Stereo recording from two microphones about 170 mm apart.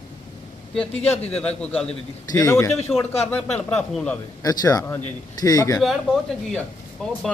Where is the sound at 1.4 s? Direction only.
5° left (ahead or behind).